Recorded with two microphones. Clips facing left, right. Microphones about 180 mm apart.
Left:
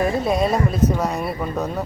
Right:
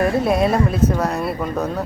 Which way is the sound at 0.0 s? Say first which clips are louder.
Right 2 dB; centre (ahead or behind).